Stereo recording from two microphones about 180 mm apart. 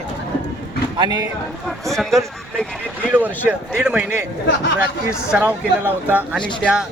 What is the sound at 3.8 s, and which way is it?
Speech, 5° right (ahead or behind).